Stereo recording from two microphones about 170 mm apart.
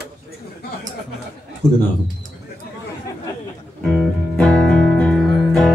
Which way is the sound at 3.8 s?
5° left (ahead or behind).